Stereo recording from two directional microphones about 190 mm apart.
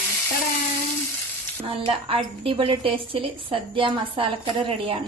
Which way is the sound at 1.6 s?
30° right (ahead or behind).